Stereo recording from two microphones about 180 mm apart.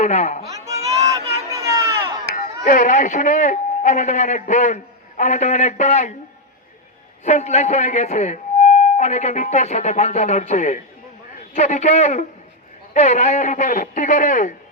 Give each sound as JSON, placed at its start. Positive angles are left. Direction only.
{"t": 0.0, "sound": "speech", "side_deg": 40}
{"t": 0.5, "sound": "speech", "side_deg": -20}
{"t": 0.9, "sound": "a sound", "side_deg": -20}
{"t": 2.3, "sound": "speech", "side_deg": 45}
{"t": 7.3, "sound": "a man's voice", "side_deg": 40}